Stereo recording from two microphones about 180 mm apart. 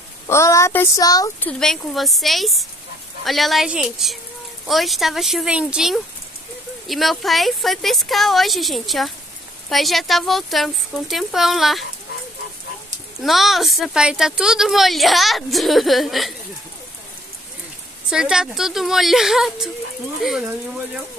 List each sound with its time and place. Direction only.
0.3 s speech: 15° left (ahead or behind)
1.4 s a woman's voice: 5° left (ahead or behind)
13.2 s a woman's voice: centre (ahead or behind)
18.1 s a woman's voice: 5° right (ahead or behind)